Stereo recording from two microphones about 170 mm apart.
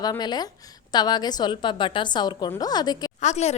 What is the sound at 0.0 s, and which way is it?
A woman's voice, 25° left (ahead or behind).